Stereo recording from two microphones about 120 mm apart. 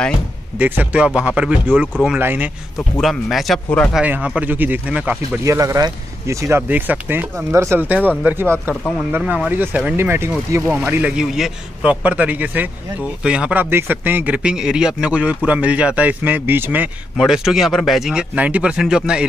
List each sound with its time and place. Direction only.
0.6 s speech: 15° right (ahead or behind)
3.0 s speech: centre (ahead or behind)
3.9 s speech: 10° right (ahead or behind)
5.4 s speech: 25° right (ahead or behind)
9.2 s speech: 5° right (ahead or behind)
9.5 s speech: 15° right (ahead or behind)
17.2 s speech: 5° right (ahead or behind)